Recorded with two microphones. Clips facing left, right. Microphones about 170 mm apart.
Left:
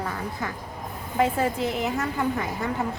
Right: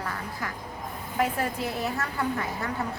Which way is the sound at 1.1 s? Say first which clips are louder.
Left 4 dB; 25° left (ahead or behind).